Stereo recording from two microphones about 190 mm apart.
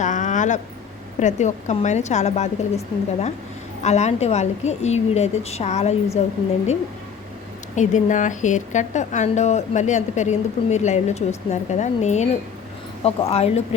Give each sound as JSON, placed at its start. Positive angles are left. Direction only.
{"t": 0.0, "sound": "a sound", "side_deg": 40}
{"t": 1.2, "sound": "a woman's voice", "side_deg": 40}
{"t": 7.8, "sound": "a woman's voice", "side_deg": 40}